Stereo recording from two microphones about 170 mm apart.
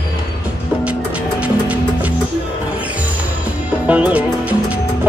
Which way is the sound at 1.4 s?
10° right (ahead or behind).